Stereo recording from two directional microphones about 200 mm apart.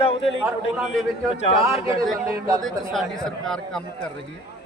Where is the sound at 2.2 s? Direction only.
15° right (ahead or behind).